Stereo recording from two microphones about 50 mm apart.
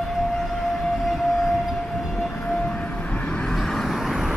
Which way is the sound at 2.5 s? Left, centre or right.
Left.